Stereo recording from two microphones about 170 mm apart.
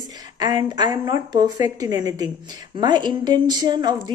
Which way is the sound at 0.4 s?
25° right (ahead or behind).